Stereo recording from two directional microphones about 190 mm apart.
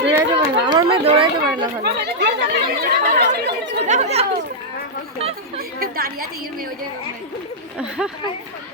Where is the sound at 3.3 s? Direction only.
60° right (ahead or behind).